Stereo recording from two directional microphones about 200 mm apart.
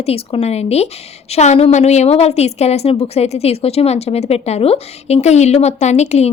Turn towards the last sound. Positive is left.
turn(degrees=35)  # may be behind; listen again after turning